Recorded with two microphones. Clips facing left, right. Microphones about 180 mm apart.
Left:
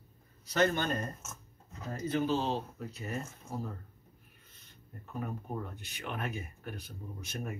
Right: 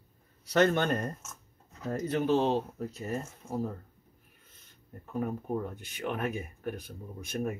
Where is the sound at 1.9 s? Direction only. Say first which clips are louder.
Right 4 dB; 65° right (ahead or behind); by 3.2 s 45° right (ahead or behind).